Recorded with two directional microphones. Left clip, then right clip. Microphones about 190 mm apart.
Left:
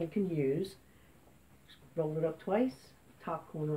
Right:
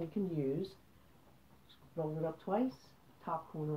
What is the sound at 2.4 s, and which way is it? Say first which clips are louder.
Speech: left 4 dB; 25° left (ahead or behind).